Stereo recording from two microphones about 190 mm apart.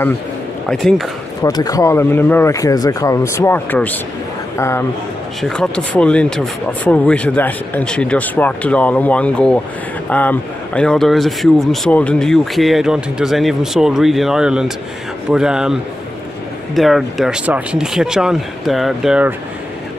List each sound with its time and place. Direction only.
0.7 s a man's voice: centre (ahead or behind)
1.4 s speech: 20° left (ahead or behind)
5.4 s a man's voice: 5° left (ahead or behind)